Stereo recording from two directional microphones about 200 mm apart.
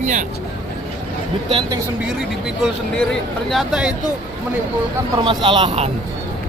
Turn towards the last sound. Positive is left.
turn(degrees=-30)  # may be behind; listen again after turning